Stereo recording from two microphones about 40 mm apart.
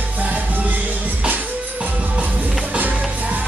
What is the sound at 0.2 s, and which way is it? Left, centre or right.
Music, right.